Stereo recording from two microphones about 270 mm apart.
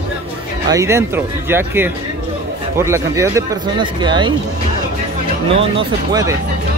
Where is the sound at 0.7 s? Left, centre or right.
Centre.